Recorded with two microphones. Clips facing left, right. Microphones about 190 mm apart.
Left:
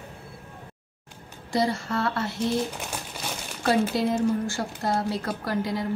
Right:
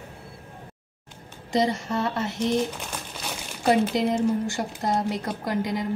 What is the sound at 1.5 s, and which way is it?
Speech, 20° right (ahead or behind).